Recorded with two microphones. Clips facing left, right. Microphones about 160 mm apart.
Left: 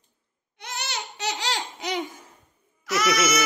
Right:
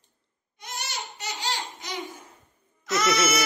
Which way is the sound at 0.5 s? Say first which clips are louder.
Left 2 dB; 65° left (ahead or behind).